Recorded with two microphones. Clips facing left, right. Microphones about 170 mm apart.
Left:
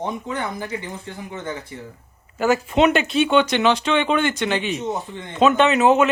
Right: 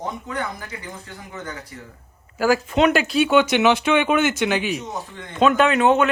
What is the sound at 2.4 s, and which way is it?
Speech, centre (ahead or behind).